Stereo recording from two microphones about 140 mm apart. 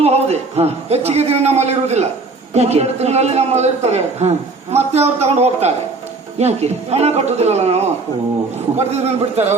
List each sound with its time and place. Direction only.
0.0 s a man's voice: 50° right (ahead or behind)
8.9 s a man's voice: 50° right (ahead or behind)